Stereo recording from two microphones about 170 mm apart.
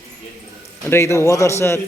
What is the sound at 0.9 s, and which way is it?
Speech, 15° left (ahead or behind).